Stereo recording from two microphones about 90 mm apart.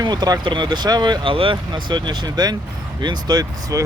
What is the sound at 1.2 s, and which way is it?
Speech, 75° right (ahead or behind).